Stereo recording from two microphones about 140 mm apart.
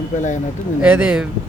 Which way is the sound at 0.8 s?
10° right (ahead or behind).